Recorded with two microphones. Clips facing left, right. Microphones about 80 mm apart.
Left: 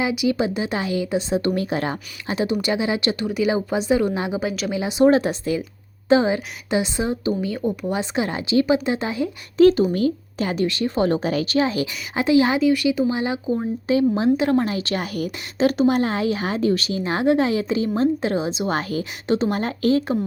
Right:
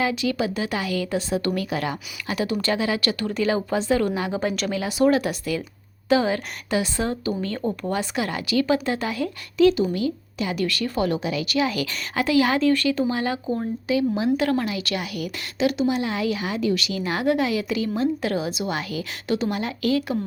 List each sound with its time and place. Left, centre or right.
0.0 s a woman's voice: centre
4.3 s speech: centre
4.7 s a woman's voice: left
9.6 s a woman's voice: left
12.5 s speech: centre
13.9 s a woman's voice: left
18.7 s a woman's voice: left